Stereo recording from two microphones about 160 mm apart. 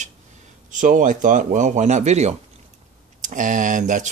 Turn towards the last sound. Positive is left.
turn(degrees=-55)  # may be behind; listen again after turning